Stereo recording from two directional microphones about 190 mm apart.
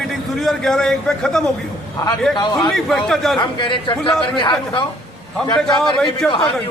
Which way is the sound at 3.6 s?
25° left (ahead or behind).